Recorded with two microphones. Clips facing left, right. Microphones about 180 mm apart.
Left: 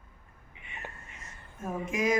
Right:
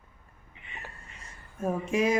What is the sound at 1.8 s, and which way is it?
Speech, 30° right (ahead or behind).